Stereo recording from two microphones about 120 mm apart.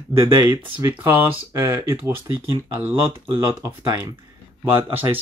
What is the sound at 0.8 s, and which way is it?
Speech, 20° right (ahead or behind).